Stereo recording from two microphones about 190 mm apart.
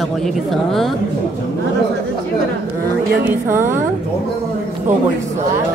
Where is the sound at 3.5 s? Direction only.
10° right (ahead or behind).